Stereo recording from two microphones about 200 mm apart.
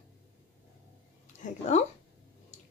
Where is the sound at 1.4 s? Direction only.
40° left (ahead or behind).